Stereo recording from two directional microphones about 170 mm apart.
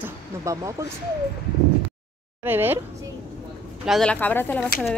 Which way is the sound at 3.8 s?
5° left (ahead or behind).